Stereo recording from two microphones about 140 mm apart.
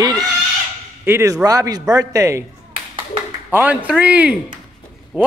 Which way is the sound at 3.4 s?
10° right (ahead or behind).